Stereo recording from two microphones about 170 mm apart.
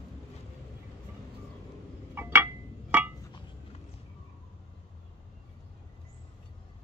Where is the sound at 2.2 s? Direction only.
15° right (ahead or behind).